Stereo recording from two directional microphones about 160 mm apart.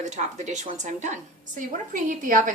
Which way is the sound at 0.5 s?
50° right (ahead or behind).